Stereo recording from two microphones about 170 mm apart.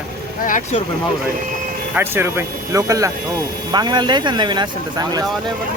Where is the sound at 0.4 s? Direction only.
50° left (ahead or behind).